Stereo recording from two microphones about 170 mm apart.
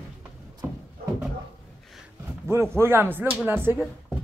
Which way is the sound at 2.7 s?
15° right (ahead or behind).